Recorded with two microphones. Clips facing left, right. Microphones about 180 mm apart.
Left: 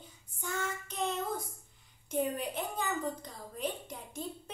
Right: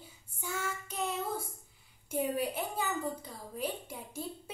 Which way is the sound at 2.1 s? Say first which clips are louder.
Right 1 dB; 10° right (ahead or behind).